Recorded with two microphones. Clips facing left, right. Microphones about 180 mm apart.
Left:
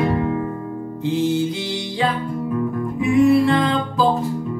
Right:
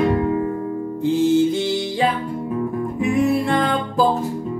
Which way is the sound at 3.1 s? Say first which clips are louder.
Left 5 dB; 45° right (ahead or behind).